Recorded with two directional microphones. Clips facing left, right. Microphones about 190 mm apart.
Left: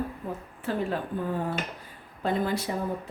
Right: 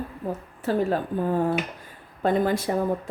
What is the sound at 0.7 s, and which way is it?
Speech, 40° right (ahead or behind).